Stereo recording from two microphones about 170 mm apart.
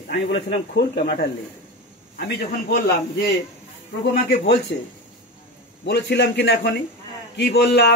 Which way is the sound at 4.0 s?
80° left.